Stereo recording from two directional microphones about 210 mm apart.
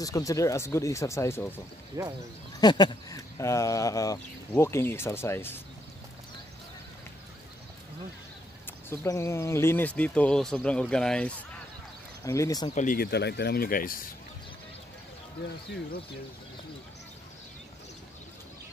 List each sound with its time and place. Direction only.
0.0 s speech: 15° left (ahead or behind)
2.0 s speech: 15° right (ahead or behind)
2.6 s speech: 20° left (ahead or behind)
8.6 s speech: 10° left (ahead or behind)
12.3 s speech: 15° left (ahead or behind)
12.7 s speech: 40° left (ahead or behind)